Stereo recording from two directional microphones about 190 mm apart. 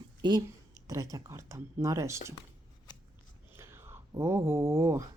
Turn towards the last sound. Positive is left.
turn(degrees=-15)  # may be behind; listen again after turning